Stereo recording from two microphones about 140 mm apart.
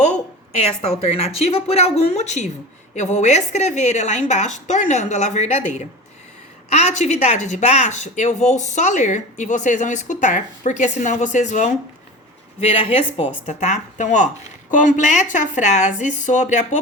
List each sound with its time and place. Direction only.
0.6 s a woman's voice: 45° left (ahead or behind)
6.7 s speech: 50° left (ahead or behind)
12.5 s a woman's voice: 45° left (ahead or behind)
13.4 s speech: 55° left (ahead or behind)